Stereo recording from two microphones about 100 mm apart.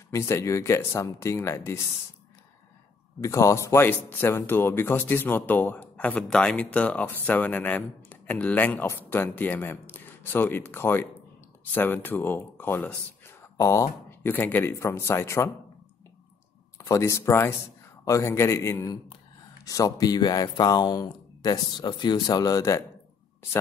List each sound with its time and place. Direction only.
0.1 s speech: 25° left (ahead or behind)
3.2 s speech: 30° left (ahead or behind)
13.4 s a sound: 30° left (ahead or behind)
14.5 s speech: 25° left (ahead or behind)
16.7 s speech: 30° left (ahead or behind)